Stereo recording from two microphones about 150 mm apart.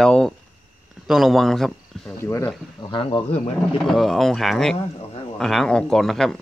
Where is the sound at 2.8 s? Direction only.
35° left (ahead or behind).